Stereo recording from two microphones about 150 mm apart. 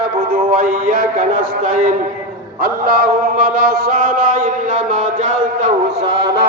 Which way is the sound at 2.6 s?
85° right.